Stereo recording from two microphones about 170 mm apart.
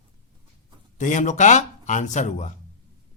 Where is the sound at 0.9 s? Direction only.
45° left (ahead or behind).